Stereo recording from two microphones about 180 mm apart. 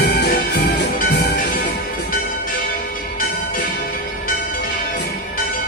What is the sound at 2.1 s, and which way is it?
Bell, 50° left (ahead or behind).